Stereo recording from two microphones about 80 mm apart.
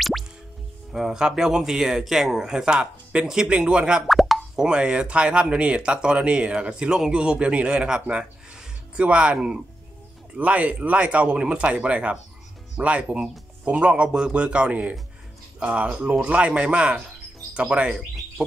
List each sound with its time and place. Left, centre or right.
0.9 s speech: centre
4.1 s speech: centre